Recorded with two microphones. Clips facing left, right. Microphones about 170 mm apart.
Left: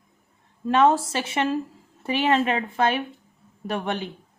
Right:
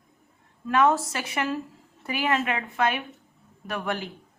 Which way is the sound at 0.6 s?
30° left (ahead or behind).